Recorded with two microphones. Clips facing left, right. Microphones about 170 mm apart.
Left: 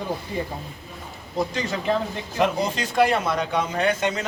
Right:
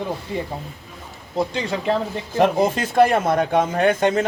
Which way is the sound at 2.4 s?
50° right (ahead or behind).